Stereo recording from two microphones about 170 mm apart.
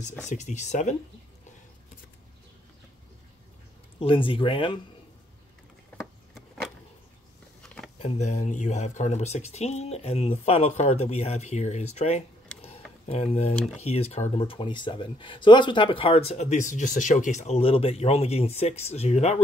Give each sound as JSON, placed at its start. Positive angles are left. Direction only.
{"t": 0.2, "sound": "speech", "side_deg": 45}
{"t": 4.0, "sound": "speech", "side_deg": 30}
{"t": 5.9, "sound": "a sound", "side_deg": 0}
{"t": 8.0, "sound": "speech", "side_deg": 45}